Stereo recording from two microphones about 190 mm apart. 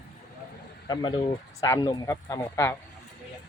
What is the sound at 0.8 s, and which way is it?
Speech, 25° left (ahead or behind).